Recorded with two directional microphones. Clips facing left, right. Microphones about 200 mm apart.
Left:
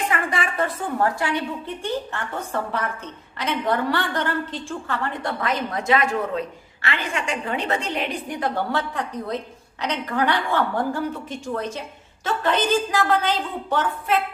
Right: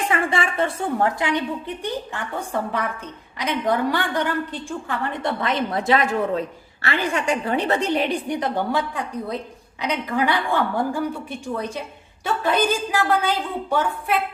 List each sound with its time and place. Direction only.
0.1 s a woman's voice: 25° right (ahead or behind)
8.4 s a woman's voice: 15° right (ahead or behind)